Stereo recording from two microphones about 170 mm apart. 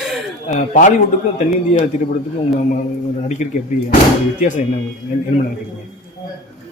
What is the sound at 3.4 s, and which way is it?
Speech, 45° left (ahead or behind).